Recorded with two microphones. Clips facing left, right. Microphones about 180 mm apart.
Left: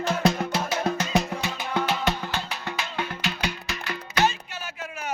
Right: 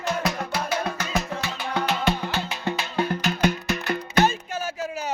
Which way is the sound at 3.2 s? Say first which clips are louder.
Right 7 dB; 45° right (ahead or behind).